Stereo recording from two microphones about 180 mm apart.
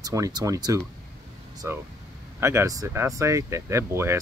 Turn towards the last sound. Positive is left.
turn(degrees=-15)  # may be behind; listen again after turning